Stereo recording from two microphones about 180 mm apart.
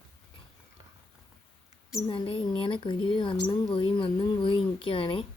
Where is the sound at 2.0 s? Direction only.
30° left (ahead or behind).